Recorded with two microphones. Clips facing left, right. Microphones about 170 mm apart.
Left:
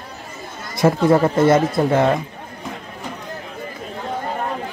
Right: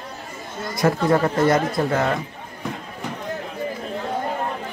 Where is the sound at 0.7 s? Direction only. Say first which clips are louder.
Left 4 dB; 25° left (ahead or behind).